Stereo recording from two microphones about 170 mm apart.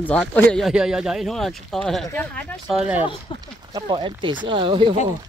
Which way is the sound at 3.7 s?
25° right (ahead or behind).